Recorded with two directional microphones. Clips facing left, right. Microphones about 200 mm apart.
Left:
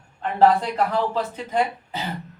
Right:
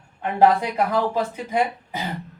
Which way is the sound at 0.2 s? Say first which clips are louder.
Even; 10° right (ahead or behind).